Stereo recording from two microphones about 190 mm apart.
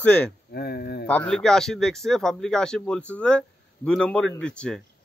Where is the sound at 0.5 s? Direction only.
55° left (ahead or behind).